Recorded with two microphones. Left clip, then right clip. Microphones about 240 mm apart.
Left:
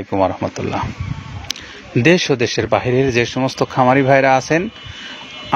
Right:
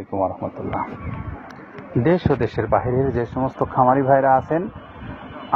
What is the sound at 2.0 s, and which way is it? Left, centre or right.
Speech, left.